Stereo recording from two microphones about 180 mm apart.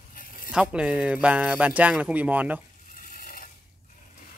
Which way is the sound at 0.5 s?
5° right (ahead or behind).